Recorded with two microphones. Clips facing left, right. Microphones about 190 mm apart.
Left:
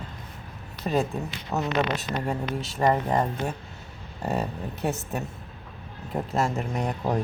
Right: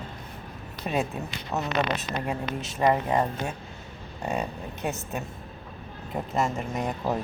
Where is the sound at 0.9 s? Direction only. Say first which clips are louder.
Left 3 dB; 5° right (ahead or behind).